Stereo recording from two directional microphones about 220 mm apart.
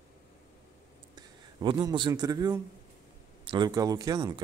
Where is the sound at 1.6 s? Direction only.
20° right (ahead or behind).